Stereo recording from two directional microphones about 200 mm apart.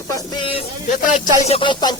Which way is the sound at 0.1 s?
25° left (ahead or behind).